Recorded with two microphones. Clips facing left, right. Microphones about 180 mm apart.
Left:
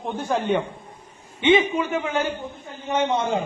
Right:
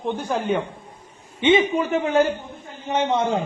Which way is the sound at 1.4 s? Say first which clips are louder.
Right 1 dB; 25° right (ahead or behind).